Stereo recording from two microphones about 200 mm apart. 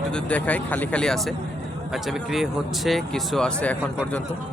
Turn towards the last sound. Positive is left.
turn(degrees=5)  # may be behind; listen again after turning